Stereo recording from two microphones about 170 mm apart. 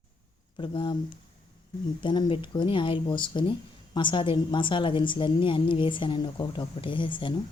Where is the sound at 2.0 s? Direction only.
30° left (ahead or behind).